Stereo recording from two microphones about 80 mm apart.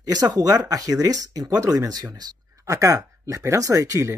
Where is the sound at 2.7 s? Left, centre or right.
Right.